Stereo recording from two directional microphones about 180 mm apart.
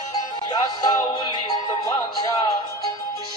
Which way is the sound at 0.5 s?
20° left (ahead or behind).